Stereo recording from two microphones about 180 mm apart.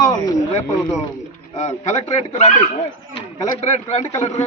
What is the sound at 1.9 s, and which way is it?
A man's voice, 40° left (ahead or behind).